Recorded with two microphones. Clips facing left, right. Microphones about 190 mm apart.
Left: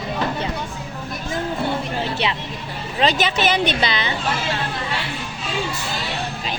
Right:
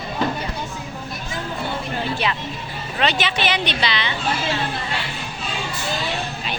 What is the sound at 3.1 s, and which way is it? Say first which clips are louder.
Speech: left 4 dB; 45° left (ahead or behind).